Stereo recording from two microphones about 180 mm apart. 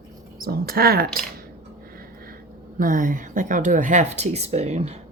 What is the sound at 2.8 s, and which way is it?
A woman's voice, 50° right (ahead or behind).